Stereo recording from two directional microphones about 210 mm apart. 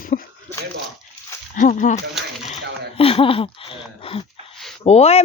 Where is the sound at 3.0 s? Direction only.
25° left (ahead or behind).